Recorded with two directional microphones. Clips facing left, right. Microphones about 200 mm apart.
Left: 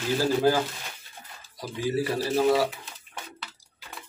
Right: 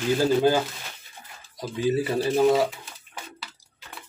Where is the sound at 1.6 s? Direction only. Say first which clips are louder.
Right 3 dB; 20° right (ahead or behind).